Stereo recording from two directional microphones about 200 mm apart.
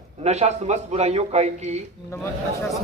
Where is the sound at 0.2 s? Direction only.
35° right (ahead or behind).